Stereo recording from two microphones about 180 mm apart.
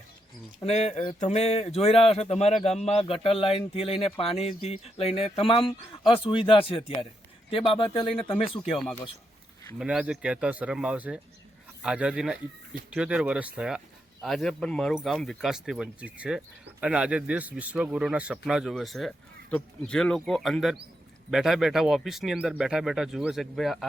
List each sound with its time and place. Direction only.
0.6 s speech: 40° left (ahead or behind)
8.6 s a man's voice: centre (ahead or behind)